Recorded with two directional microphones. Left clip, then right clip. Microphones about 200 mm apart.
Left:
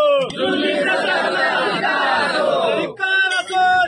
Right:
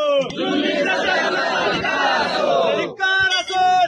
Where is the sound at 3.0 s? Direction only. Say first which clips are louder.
Even; 25° right (ahead or behind).